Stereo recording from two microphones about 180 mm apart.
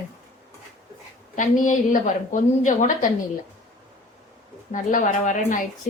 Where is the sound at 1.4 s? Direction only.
45° left (ahead or behind).